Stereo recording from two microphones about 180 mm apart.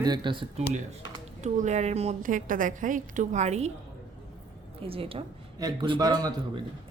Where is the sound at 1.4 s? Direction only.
40° right (ahead or behind).